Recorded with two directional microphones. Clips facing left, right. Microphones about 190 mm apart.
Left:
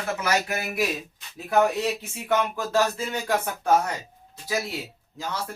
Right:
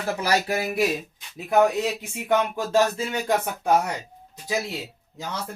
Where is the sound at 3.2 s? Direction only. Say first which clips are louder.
Right 2 dB; 15° right (ahead or behind).